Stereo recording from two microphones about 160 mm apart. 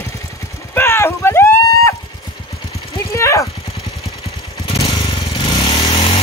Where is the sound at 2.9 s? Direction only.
20° left (ahead or behind).